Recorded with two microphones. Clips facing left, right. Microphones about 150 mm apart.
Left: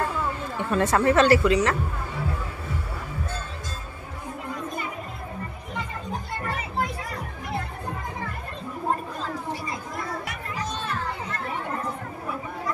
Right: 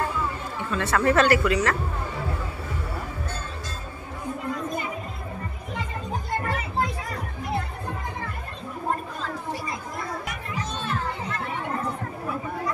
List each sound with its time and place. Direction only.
0.6 s speech: 50° left (ahead or behind)
0.9 s speech: 25° left (ahead or behind)